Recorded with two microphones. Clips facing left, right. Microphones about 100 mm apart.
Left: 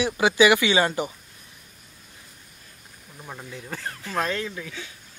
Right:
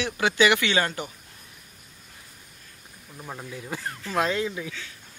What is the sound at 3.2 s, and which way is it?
Speech, 10° right (ahead or behind).